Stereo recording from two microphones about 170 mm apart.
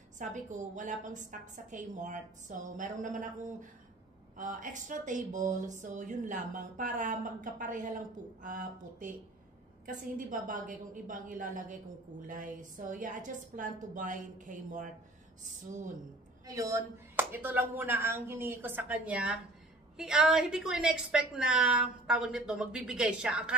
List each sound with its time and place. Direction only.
0.2 s a woman's voice: 50° right (ahead or behind)
16.4 s a woman's voice: 20° right (ahead or behind)